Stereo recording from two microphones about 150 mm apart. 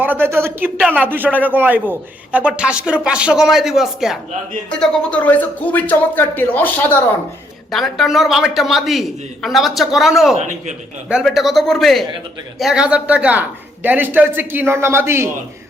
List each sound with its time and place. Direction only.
0.0 s a sound: 15° right (ahead or behind)
0.8 s speech: 10° right (ahead or behind)
4.8 s speech: 10° left (ahead or behind)
7.7 s a man's voice: centre (ahead or behind)
10.3 s a man's voice: 55° right (ahead or behind)
11.1 s a man's voice: centre (ahead or behind); by 15.3 s 15° right (ahead or behind)